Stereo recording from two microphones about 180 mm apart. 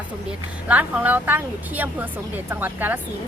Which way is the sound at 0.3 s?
10° right (ahead or behind).